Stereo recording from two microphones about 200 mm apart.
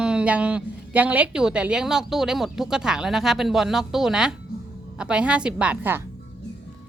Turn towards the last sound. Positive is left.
turn(degrees=-10)  # may be behind; listen again after turning